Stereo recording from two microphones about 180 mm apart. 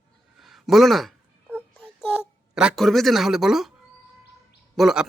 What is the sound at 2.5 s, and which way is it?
Speech, 5° right (ahead or behind).